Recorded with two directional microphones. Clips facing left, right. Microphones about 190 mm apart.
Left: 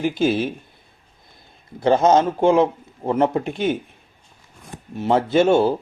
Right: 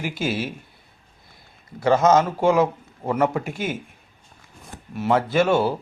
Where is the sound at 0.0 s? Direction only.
25° left (ahead or behind).